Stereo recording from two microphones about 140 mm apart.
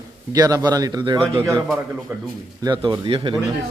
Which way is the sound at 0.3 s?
25° right (ahead or behind).